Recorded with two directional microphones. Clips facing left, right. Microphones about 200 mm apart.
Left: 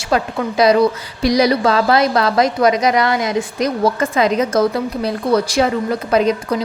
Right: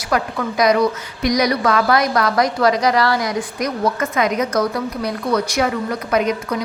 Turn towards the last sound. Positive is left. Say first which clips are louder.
# left 3 dB
turn(degrees=30)  # may be behind; listen again after turning